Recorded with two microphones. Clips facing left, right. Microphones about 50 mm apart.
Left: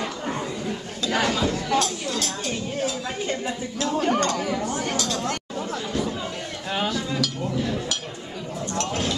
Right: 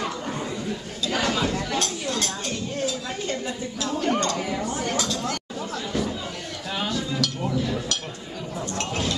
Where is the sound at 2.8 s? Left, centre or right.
Left.